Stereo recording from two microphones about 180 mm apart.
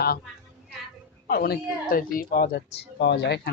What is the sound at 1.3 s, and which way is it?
A woman's voice, 55° left (ahead or behind).